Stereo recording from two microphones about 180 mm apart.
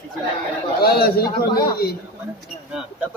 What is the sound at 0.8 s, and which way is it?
Speech, 60° left (ahead or behind).